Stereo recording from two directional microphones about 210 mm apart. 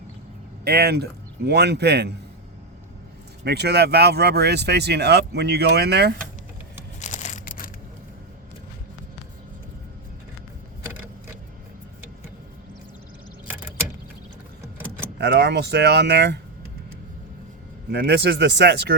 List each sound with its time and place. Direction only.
0.6 s speech: 50° right (ahead or behind)
3.4 s speech: 50° right (ahead or behind)
7.0 s a sound: 35° left (ahead or behind)
15.2 s speech: 55° right (ahead or behind)
17.9 s speech: 50° right (ahead or behind)